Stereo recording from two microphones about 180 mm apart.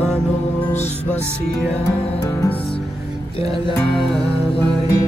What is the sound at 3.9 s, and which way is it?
Music, centre (ahead or behind).